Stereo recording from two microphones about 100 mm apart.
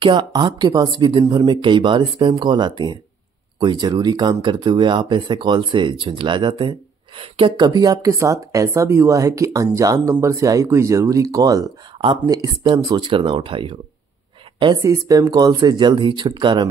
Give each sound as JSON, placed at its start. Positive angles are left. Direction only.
{"t": 0.0, "sound": "speech", "side_deg": -50}
{"t": 7.2, "sound": "speech", "side_deg": -65}
{"t": 7.5, "sound": "speech", "side_deg": -45}
{"t": 12.8, "sound": "speech", "side_deg": -45}
{"t": 14.8, "sound": "speech", "side_deg": -35}